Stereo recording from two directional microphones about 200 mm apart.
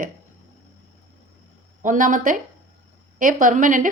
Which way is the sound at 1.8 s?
40° right (ahead or behind).